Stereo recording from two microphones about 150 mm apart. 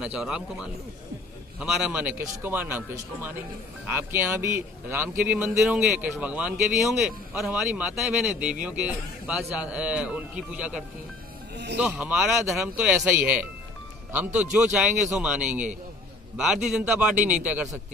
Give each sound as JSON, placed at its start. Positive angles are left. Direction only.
{"t": 0.0, "sound": "a man's voice", "side_deg": -5}
{"t": 11.5, "sound": "music", "side_deg": -90}
{"t": 11.8, "sound": "a man's voice", "side_deg": -10}